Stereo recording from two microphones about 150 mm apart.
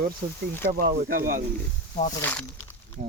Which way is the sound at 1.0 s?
75° right (ahead or behind).